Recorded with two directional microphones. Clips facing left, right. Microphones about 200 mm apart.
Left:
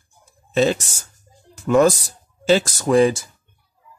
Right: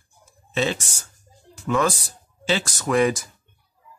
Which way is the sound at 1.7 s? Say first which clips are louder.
Left 7 dB; 40° left (ahead or behind).